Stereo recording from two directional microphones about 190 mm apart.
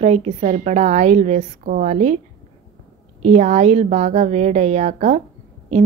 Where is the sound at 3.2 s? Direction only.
35° right (ahead or behind).